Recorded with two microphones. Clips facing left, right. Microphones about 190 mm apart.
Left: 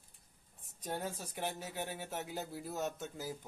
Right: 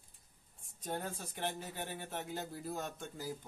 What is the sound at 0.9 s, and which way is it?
Speech, 5° left (ahead or behind).